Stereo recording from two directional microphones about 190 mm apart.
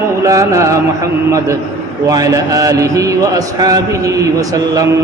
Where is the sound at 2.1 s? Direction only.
20° right (ahead or behind).